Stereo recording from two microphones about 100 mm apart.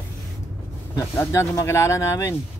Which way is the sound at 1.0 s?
30° left (ahead or behind).